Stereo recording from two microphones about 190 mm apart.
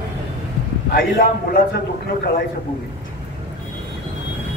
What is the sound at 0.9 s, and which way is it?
Speech, 50° left (ahead or behind).